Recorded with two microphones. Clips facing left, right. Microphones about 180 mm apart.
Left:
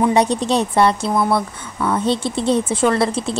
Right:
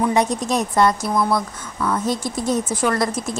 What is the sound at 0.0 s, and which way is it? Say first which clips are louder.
Speech: left 3 dB; 30° left (ahead or behind).